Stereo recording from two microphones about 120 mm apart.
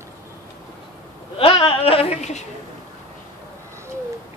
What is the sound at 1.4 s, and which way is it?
A man's voice, 45° left (ahead or behind).